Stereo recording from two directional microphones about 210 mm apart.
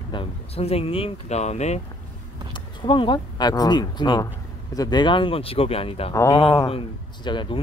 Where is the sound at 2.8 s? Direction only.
25° left (ahead or behind).